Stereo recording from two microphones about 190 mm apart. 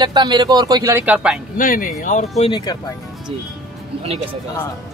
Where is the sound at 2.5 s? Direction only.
20° left (ahead or behind).